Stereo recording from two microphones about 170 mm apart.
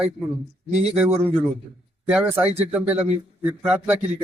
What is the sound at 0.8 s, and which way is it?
Speech, 10° right (ahead or behind).